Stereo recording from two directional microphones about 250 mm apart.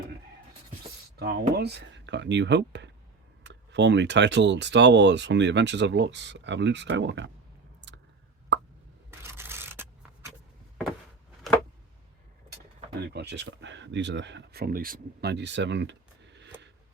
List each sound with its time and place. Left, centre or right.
1.1 s speech: right
7.8 s clicking: right
8.5 s plop: right
9.0 s scrape: centre
13.0 s speech: right